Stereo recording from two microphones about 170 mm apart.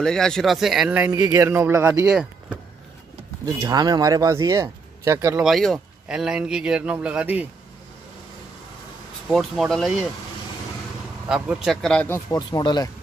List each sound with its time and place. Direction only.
0.0 s a man's voice: 5° left (ahead or behind)
3.4 s speech: 25° right (ahead or behind)
5.4 s speech: centre (ahead or behind)
9.3 s speech: centre (ahead or behind)
11.2 s speech: 5° right (ahead or behind)
12.1 s speech: 20° left (ahead or behind)